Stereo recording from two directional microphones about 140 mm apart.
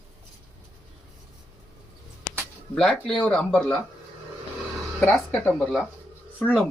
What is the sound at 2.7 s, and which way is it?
Speech, 5° left (ahead or behind).